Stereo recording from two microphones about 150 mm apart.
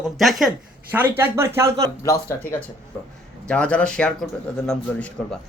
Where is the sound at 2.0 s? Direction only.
25° left (ahead or behind).